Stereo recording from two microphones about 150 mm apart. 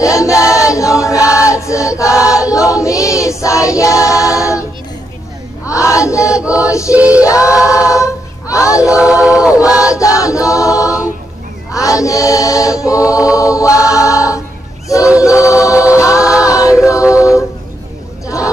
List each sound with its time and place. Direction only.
0.0 s choir: 20° left (ahead or behind)
4.1 s a capella: 20° left (ahead or behind)
5.8 s choir: 20° left (ahead or behind)
7.0 s a sound: 10° right (ahead or behind)
7.9 s child singing: 20° left (ahead or behind)
8.9 s a sound: 5° right (ahead or behind)
9.7 s choir: 10° right (ahead or behind)
9.9 s choir: 20° left (ahead or behind)
15.7 s choir: 10° right (ahead or behind)
16.1 s music: 20° left (ahead or behind)
16.4 s a capella: 20° left (ahead or behind)
18.2 s chatter: 20° left (ahead or behind)